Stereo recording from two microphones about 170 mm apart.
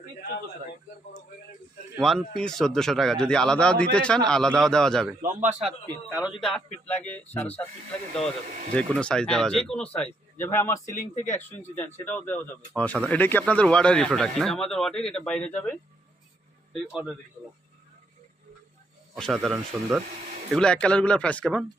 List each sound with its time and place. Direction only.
2.0 s speech: centre (ahead or behind)
5.2 s a man's voice: 45° right (ahead or behind)
6.1 s a man's voice: 5° right (ahead or behind)
6.5 s speech: 10° left (ahead or behind)
8.7 s speech: 5° left (ahead or behind)
12.0 s speech: 10° left (ahead or behind)
16.8 s speech: 5° right (ahead or behind)
19.1 s speech: centre (ahead or behind)